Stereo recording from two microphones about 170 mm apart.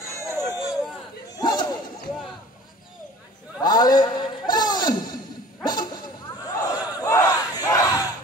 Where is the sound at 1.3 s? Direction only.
25° left (ahead or behind).